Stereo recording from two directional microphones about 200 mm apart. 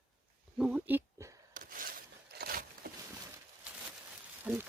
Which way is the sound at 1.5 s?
45° right (ahead or behind).